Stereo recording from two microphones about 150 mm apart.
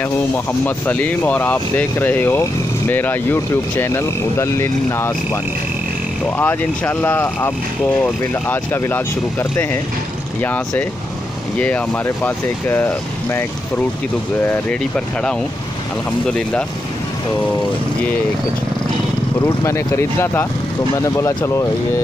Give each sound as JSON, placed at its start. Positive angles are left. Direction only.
{"t": 0.0, "sound": "speech", "side_deg": 10}
{"t": 11.5, "sound": "speech", "side_deg": 10}
{"t": 19.4, "sound": "speech", "side_deg": 20}